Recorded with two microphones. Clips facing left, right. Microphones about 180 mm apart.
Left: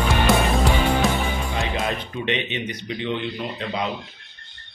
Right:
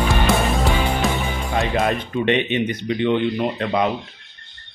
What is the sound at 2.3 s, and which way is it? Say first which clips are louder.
A man's voice: right 7 dB; 55° right (ahead or behind).